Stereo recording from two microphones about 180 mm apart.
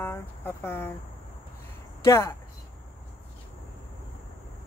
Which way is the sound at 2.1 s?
15° left (ahead or behind).